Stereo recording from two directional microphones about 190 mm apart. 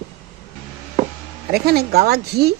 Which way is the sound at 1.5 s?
55° right (ahead or behind).